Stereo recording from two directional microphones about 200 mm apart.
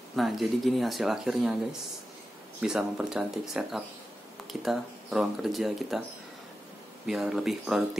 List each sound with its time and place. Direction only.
0.1 s speech: centre (ahead or behind)
7.1 s speech: centre (ahead or behind)